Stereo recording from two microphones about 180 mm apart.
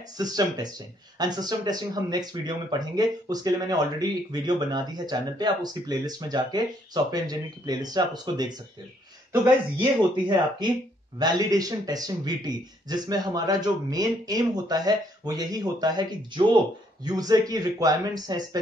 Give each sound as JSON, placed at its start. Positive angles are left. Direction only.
{"t": 0.2, "sound": "speech", "side_deg": -20}